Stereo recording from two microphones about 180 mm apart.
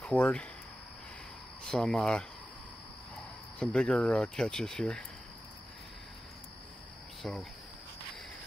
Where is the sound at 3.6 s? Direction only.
5° left (ahead or behind).